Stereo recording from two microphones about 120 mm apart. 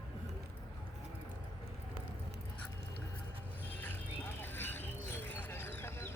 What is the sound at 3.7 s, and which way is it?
Vehicle, 15° left (ahead or behind).